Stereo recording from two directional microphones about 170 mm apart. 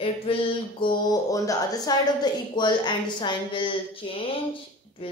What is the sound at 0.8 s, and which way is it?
Speech, 20° left (ahead or behind).